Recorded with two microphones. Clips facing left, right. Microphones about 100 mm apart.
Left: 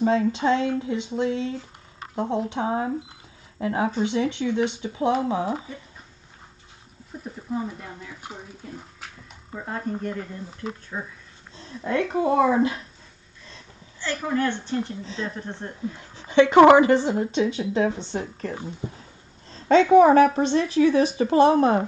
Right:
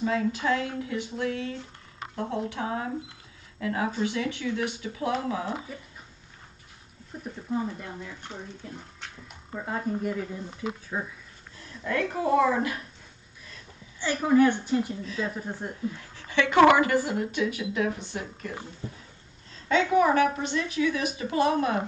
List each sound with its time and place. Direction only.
0.0 s a woman's voice: 25° left (ahead or behind)
7.5 s speech: 5° left (ahead or behind)
9.0 s a sound: centre (ahead or behind)
10.0 s speech: 5° right (ahead or behind)
11.5 s a woman's voice: 25° left (ahead or behind)
13.9 s a woman's voice: 15° right (ahead or behind)
16.0 s a woman's voice: 20° left (ahead or behind)
18.8 s a woman's voice: 20° left (ahead or behind)
19.5 s a woman's voice: 30° left (ahead or behind)